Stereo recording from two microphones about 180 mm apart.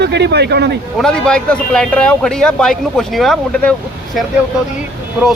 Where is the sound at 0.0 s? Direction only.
65° right (ahead or behind).